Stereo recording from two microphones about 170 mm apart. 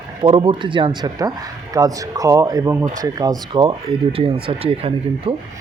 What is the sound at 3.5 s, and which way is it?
Speech, 35° right (ahead or behind).